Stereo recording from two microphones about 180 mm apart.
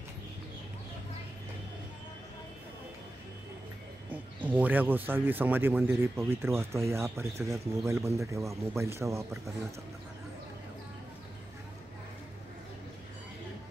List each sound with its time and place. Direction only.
4.1 s speech: 10° right (ahead or behind)